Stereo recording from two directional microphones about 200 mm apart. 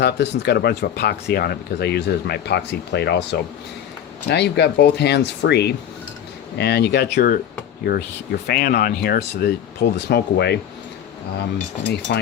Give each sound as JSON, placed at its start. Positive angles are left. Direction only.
{"t": 0.0, "sound": "speech", "side_deg": 55}
{"t": 4.3, "sound": "speech", "side_deg": 55}